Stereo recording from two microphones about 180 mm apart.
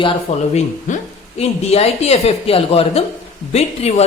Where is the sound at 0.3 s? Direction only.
40° left (ahead or behind).